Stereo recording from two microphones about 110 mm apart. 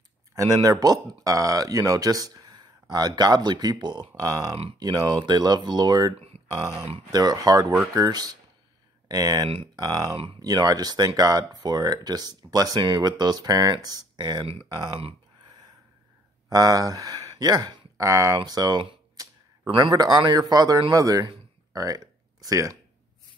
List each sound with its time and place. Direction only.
0.4 s speech: 30° right (ahead or behind)
6.1 s speech: 65° right (ahead or behind)
7.1 s speech: 35° right (ahead or behind)
15.4 s a sound: 40° right (ahead or behind)
16.4 s speech: 35° right (ahead or behind)
21.3 s a sound: 35° right (ahead or behind)